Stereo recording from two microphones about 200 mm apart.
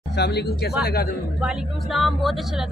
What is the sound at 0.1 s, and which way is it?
Speech, 55° left (ahead or behind).